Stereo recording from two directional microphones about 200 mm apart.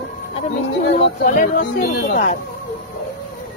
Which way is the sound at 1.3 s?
45° left (ahead or behind).